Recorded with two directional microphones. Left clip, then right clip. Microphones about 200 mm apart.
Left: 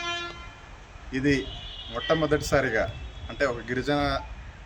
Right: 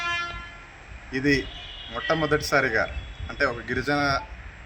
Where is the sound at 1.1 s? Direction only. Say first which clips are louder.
Right 2 dB; 20° left (ahead or behind).